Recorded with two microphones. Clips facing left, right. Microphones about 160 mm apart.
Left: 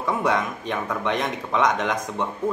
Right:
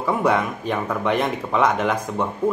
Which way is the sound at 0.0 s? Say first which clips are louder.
Right 3 dB; 5° right (ahead or behind).